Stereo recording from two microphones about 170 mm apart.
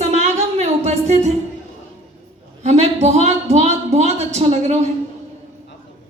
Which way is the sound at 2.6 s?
40° right (ahead or behind).